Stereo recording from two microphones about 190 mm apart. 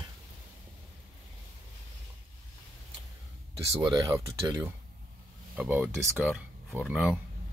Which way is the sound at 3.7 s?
20° right (ahead or behind).